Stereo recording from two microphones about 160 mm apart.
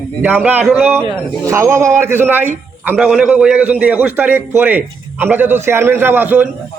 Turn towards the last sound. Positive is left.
turn(degrees=-10)  # may be behind; listen again after turning